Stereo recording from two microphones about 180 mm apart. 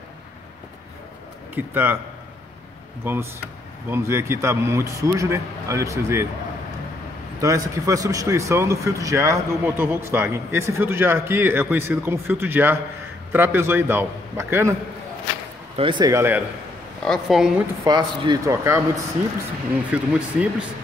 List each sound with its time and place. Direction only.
1.5 s a man's voice: 10° right (ahead or behind)
3.0 s speech: 15° right (ahead or behind)
7.3 s speech: 20° right (ahead or behind)
15.7 s a man's voice: 25° right (ahead or behind)
17.0 s a woman's voice: centre (ahead or behind)
17.8 s a man's voice: 20° right (ahead or behind)
19.9 s speech: 5° right (ahead or behind)